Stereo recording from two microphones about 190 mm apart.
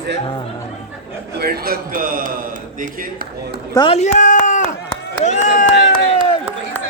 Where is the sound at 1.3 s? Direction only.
55° right (ahead or behind).